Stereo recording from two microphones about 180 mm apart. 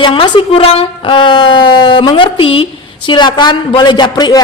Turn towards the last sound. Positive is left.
turn(degrees=25)  # may be behind; listen again after turning